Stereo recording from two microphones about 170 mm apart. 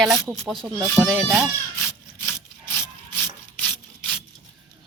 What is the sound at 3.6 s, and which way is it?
Rub, 5° left (ahead or behind).